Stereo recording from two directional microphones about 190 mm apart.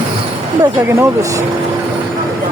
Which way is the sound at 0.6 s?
15° right (ahead or behind).